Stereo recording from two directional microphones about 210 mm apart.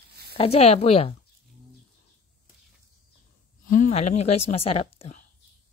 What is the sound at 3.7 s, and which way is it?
A woman's voice, 35° left (ahead or behind).